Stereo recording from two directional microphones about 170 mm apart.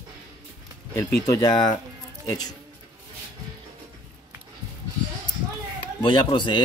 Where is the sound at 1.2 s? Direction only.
20° left (ahead or behind).